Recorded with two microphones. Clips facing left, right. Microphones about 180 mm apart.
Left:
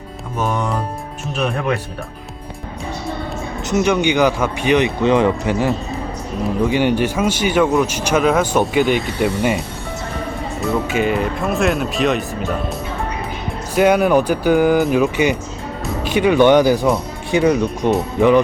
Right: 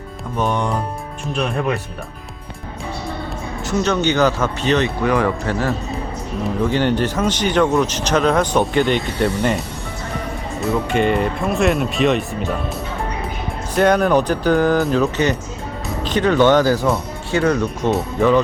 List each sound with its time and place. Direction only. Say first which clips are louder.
0.3 s speech: even; 5° left (ahead or behind)
3.6 s speech: left 2 dB; 20° left (ahead or behind)
10.8 s speech: right 1 dB; 5° left (ahead or behind)
13.7 s speech: left 1 dB; 10° left (ahead or behind)